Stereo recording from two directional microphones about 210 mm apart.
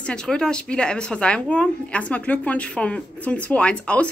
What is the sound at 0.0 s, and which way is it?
Speech, 5° left (ahead or behind).